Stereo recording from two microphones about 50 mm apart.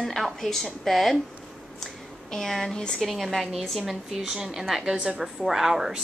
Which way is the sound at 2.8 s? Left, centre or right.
Centre.